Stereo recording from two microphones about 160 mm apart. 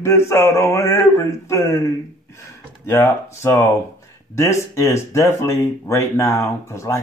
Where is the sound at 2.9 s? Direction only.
15° left (ahead or behind).